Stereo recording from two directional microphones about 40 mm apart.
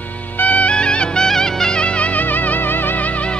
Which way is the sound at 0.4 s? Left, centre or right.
Left.